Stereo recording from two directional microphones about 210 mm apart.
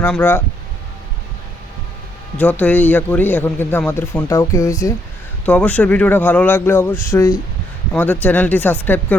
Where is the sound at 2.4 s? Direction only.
5° left (ahead or behind).